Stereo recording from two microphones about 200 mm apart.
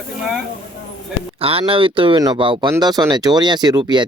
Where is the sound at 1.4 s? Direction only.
30° right (ahead or behind).